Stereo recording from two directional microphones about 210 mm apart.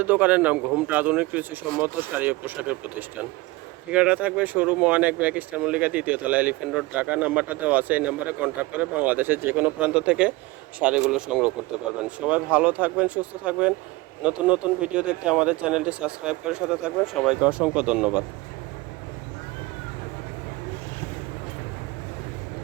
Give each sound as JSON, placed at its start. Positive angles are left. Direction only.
{"t": 0.0, "sound": "speech", "side_deg": -10}
{"t": 3.9, "sound": "speech", "side_deg": -5}